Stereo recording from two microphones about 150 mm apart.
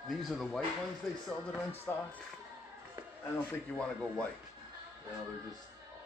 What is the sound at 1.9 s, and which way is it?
Speech, 15° left (ahead or behind).